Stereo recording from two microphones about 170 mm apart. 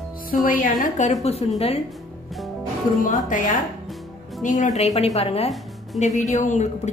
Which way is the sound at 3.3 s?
50° left (ahead or behind).